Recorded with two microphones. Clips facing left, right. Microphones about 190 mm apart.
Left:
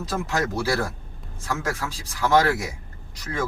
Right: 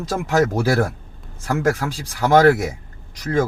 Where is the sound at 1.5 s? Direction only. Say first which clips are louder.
Right 8 dB; 50° right (ahead or behind).